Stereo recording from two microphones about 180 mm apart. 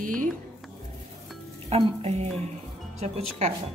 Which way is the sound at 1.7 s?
35° right (ahead or behind).